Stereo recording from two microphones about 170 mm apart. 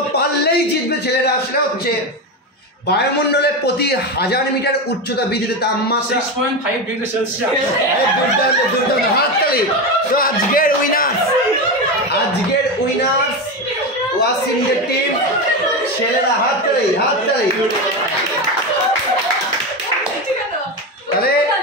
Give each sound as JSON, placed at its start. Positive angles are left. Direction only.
{"t": 2.9, "sound": "a man's voice", "side_deg": 75}
{"t": 10.1, "sound": "a man's voice", "side_deg": 55}